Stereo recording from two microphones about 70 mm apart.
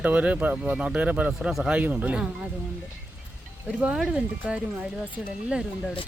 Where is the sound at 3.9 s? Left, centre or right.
Centre.